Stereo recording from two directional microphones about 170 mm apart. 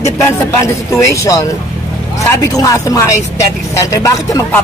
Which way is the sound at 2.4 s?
20° left (ahead or behind).